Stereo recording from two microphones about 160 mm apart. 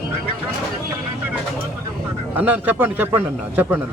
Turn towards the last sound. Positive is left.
turn(degrees=-10)  # may be behind; listen again after turning